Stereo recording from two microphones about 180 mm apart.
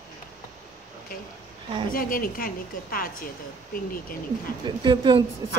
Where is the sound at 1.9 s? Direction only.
50° left (ahead or behind).